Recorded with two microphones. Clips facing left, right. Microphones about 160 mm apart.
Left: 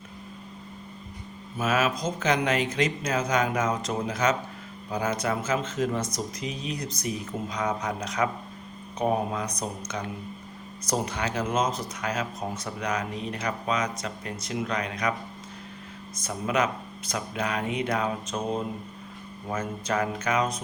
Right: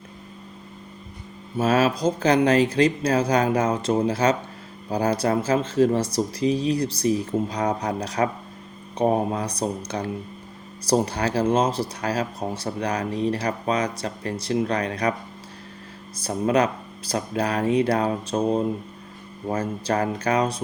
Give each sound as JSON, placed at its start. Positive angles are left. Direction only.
{"t": 1.5, "sound": "speech", "side_deg": -35}
{"t": 16.1, "sound": "speech", "side_deg": -35}